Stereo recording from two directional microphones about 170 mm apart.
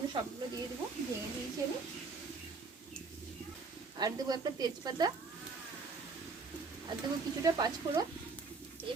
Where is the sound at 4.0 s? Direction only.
25° right (ahead or behind).